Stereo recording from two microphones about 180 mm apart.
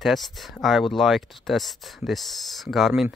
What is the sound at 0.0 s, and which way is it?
Speech, centre (ahead or behind).